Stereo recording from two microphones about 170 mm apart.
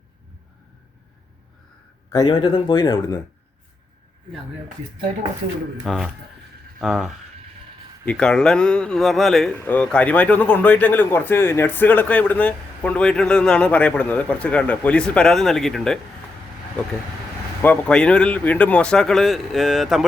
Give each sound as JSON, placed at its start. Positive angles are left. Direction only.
{"t": 2.0, "sound": "speech", "side_deg": 25}
{"t": 5.8, "sound": "a man's voice", "side_deg": 0}
{"t": 17.6, "sound": "speech", "side_deg": 10}